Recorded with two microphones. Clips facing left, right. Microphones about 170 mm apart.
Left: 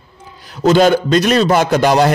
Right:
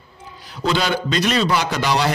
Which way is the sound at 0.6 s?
45° left (ahead or behind).